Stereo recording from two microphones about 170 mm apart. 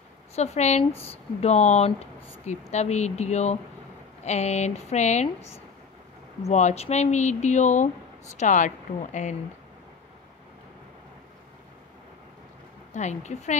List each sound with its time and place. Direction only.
0.4 s speech: 40° left (ahead or behind)
12.9 s speech: 45° left (ahead or behind)